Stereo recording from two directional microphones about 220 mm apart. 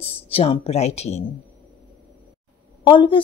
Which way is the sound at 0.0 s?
25° left (ahead or behind).